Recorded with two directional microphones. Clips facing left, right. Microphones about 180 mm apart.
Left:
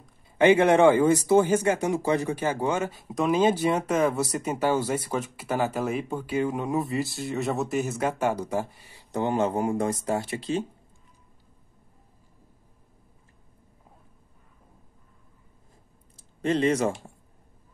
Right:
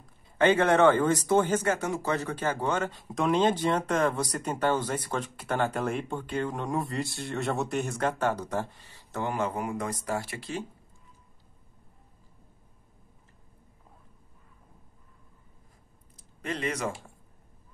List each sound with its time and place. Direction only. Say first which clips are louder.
0.4 s speech: left 4 dB; 10° left (ahead or behind)
16.2 s speech: left 10 dB; 30° left (ahead or behind)